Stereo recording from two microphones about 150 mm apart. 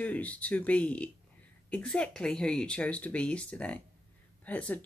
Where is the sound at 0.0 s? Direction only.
10° left (ahead or behind).